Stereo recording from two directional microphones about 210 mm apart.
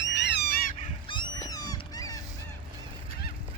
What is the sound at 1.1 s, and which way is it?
Cat, 20° left (ahead or behind).